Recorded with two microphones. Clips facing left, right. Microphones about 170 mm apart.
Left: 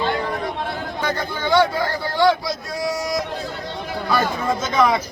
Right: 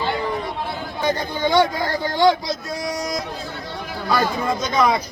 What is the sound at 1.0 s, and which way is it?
Speech, 15° right (ahead or behind).